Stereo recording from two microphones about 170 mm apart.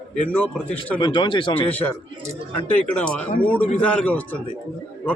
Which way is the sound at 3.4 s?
10° left (ahead or behind).